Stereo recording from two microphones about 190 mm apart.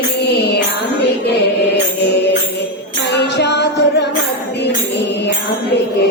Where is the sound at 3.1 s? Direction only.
65° left (ahead or behind).